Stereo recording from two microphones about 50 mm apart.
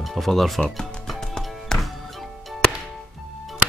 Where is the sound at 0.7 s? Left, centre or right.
Centre.